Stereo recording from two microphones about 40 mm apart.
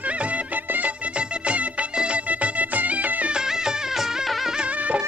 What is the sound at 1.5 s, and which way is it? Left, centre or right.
Music, right.